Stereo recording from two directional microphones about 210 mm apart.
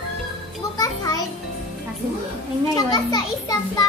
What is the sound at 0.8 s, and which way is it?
Music, 15° left (ahead or behind).